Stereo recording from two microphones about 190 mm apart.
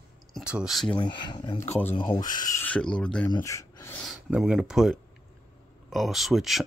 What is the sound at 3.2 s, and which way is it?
Speech, 20° left (ahead or behind).